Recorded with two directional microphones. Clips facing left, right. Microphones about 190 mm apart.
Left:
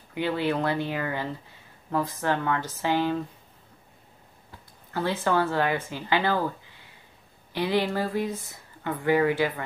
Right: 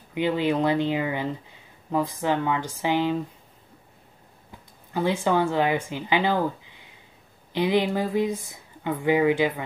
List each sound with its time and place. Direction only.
0.1 s speech: 15° right (ahead or behind)
4.5 s speech: 15° right (ahead or behind)